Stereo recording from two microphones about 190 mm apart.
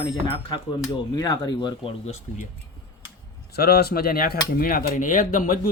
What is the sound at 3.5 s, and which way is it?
Speech, 55° left (ahead or behind).